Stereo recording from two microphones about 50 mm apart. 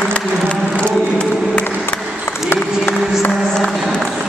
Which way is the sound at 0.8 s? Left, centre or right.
Left.